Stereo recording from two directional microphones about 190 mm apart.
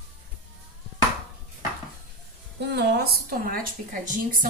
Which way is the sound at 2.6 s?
60° right (ahead or behind).